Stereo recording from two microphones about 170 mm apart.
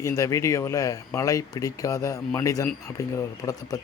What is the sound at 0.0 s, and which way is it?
Speech, 20° left (ahead or behind).